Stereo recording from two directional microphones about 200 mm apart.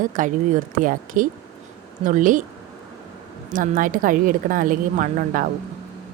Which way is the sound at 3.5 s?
40° right (ahead or behind).